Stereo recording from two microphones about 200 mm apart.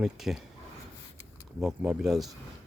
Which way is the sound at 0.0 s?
Centre (ahead or behind).